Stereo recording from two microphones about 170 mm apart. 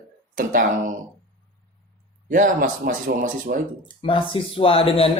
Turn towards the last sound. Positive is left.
turn(degrees=35)  # may be behind; listen again after turning